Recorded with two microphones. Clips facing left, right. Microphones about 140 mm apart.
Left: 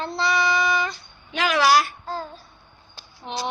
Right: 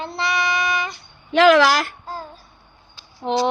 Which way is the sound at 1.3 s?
90° right.